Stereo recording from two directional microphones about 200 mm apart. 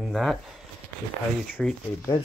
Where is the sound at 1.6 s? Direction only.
Centre (ahead or behind).